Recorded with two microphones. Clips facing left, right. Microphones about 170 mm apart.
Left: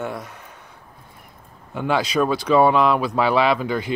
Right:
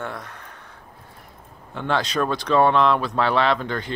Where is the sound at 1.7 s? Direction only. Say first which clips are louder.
Left 3 dB; 10° left (ahead or behind).